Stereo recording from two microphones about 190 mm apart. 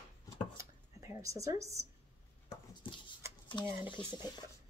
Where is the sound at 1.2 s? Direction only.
15° right (ahead or behind).